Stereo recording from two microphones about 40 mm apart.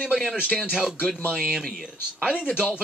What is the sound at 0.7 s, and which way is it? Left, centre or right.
Speech, centre.